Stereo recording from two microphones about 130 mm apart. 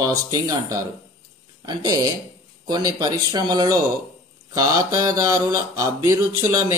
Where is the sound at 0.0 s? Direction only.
25° right (ahead or behind).